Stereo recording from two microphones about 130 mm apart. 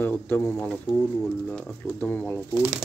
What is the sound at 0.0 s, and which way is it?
Speech, 15° left (ahead or behind).